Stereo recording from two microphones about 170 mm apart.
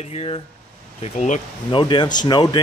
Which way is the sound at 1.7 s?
30° left (ahead or behind).